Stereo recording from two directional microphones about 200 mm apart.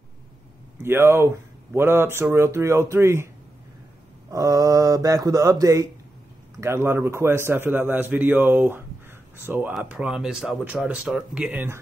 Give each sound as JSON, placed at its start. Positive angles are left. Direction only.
{"t": 0.8, "sound": "speech", "side_deg": -10}
{"t": 4.3, "sound": "speech", "side_deg": -15}